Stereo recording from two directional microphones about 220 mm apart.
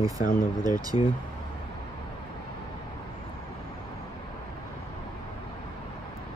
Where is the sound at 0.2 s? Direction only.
40° left (ahead or behind).